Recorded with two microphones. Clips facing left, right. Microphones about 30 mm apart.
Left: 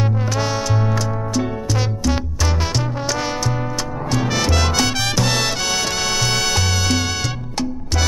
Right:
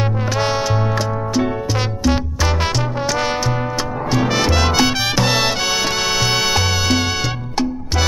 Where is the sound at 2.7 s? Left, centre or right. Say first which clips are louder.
Right 2 dB; centre.